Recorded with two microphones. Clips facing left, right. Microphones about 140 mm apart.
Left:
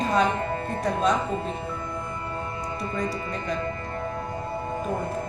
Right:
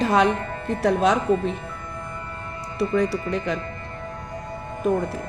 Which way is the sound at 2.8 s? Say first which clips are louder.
Right 10 dB; 70° right (ahead or behind).